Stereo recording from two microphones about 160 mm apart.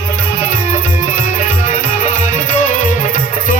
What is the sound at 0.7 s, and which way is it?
Music, 55° left (ahead or behind).